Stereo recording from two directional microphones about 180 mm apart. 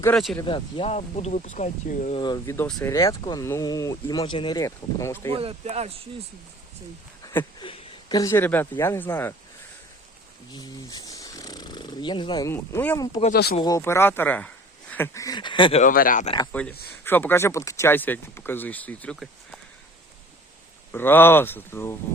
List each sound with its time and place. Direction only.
0.4 s speech: 30° left (ahead or behind)
2.1 s speech: 25° left (ahead or behind)
2.6 s speech: 5° left (ahead or behind)
3.1 s speech: 20° left (ahead or behind)
5.3 s speech: 35° right (ahead or behind)
7.6 s a sound: 30° left (ahead or behind)
8.2 s speech: 15° left (ahead or behind)
10.5 s purr: 20° left (ahead or behind)
12.5 s speech: 10° left (ahead or behind)
13.3 s speech: 60° left (ahead or behind)
13.6 s speech: 20° left (ahead or behind)
15.8 s speech: 50° left (ahead or behind)
16.5 s speech: 5° left (ahead or behind)
20.9 s speech: 10° left (ahead or behind)